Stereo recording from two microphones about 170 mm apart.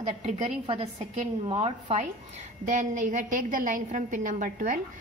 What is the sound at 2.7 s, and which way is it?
A woman's voice, 50° right (ahead or behind).